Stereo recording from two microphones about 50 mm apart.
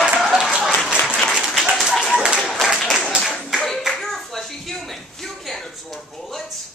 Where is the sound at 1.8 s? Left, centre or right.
Centre.